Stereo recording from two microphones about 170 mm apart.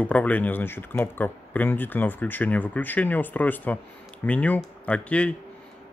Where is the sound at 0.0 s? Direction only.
10° left (ahead or behind).